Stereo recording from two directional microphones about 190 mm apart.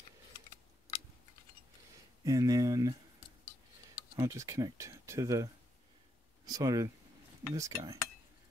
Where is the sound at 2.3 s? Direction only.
20° right (ahead or behind).